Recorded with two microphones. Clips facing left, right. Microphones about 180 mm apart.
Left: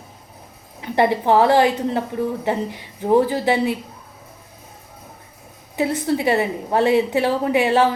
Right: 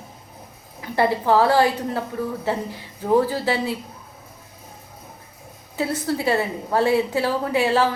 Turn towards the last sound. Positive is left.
turn(degrees=20)  # may be behind; listen again after turning